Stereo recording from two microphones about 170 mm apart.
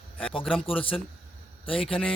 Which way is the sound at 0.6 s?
30° left (ahead or behind).